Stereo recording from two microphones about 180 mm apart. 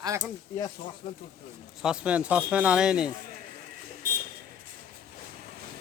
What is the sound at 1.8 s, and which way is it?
Speech, 5° right (ahead or behind).